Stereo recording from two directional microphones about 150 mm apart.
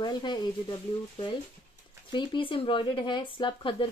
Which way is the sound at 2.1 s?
30° left (ahead or behind).